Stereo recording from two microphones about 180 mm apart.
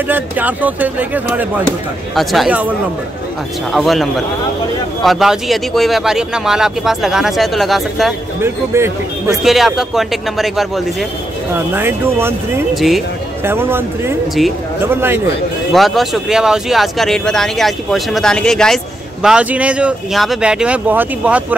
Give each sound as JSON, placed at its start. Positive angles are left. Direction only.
{"t": 0.1, "sound": "speech", "side_deg": -10}
{"t": 3.7, "sound": "speech", "side_deg": 0}
{"t": 8.4, "sound": "speech", "side_deg": -15}
{"t": 9.4, "sound": "speech", "side_deg": 0}
{"t": 11.7, "sound": "speech", "side_deg": -15}
{"t": 15.7, "sound": "speech", "side_deg": 0}